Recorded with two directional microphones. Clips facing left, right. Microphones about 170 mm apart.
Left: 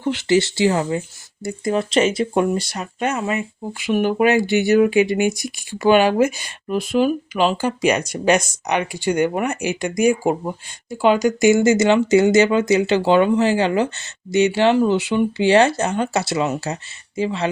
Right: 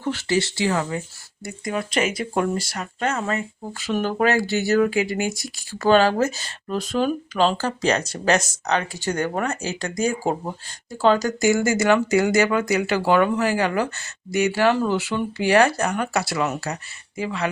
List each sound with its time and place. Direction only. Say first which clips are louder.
0.3 s speech: left 6 dB; 25° left (ahead or behind)